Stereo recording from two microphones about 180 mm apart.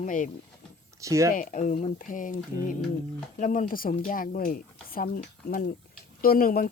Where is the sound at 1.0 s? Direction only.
15° right (ahead or behind).